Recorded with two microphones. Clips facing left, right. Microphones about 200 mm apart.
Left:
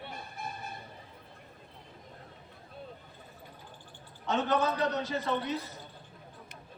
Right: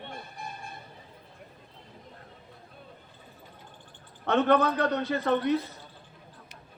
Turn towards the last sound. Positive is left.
turn(degrees=-60)  # may be behind; listen again after turning